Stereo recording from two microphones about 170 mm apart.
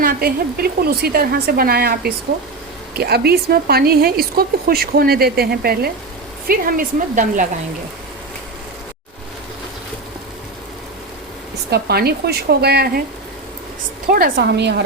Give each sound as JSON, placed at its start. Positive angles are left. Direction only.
{"t": 0.0, "sound": "speech", "side_deg": -60}
{"t": 11.7, "sound": "speech", "side_deg": -70}
{"t": 14.1, "sound": "speech", "side_deg": -60}